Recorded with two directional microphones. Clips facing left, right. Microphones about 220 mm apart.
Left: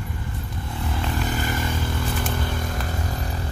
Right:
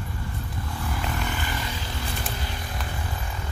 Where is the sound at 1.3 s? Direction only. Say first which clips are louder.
Left 5 dB; 45° left (ahead or behind).